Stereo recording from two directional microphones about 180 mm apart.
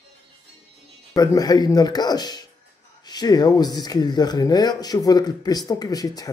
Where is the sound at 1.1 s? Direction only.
20° left (ahead or behind).